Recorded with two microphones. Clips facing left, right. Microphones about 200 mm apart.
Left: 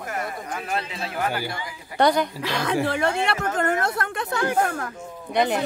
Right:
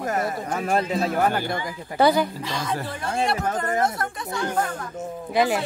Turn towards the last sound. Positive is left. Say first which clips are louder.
# right 1 dB
turn(degrees=-5)  # may be behind; listen again after turning